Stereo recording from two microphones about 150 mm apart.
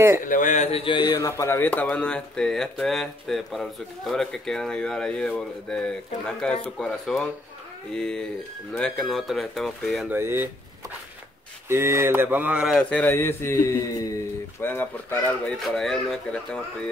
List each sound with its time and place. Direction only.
0.2 s speech: 60° left (ahead or behind); by 1.0 s 40° left (ahead or behind)
1.1 s speech: 20° left (ahead or behind); by 10.0 s centre (ahead or behind)
10.0 s speech: 15° right (ahead or behind)
11.7 s speech: 20° right (ahead or behind)
12.7 s speech: 10° left (ahead or behind)
15.6 s speech: 5° left (ahead or behind)